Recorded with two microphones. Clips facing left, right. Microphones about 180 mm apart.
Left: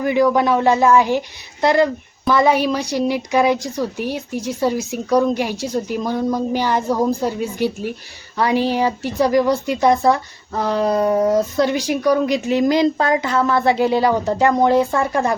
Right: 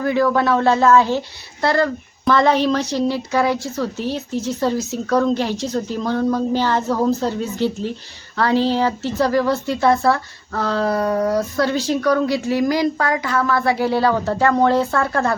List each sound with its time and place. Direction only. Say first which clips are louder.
0.0 s a woman's voice: left 2 dB; 15° left (ahead or behind)